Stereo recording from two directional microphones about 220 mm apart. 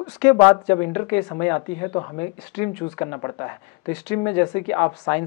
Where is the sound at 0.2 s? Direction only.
15° left (ahead or behind).